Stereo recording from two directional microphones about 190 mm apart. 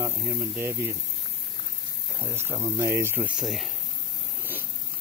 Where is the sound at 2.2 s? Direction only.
10° right (ahead or behind).